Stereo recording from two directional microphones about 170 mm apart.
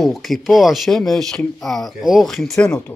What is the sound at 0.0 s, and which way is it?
Speech, centre (ahead or behind).